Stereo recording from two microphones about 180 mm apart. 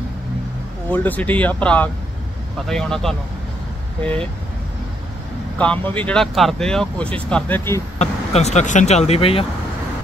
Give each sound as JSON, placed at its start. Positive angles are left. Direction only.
{"t": 0.8, "sound": "speech", "side_deg": 10}
{"t": 5.6, "sound": "speech", "side_deg": 10}
{"t": 8.0, "sound": "speech", "side_deg": 35}